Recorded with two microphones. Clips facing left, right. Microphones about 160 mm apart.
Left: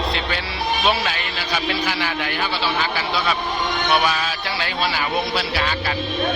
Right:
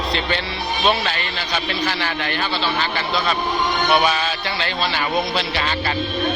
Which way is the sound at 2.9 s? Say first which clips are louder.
Right 1 dB; 5° left (ahead or behind).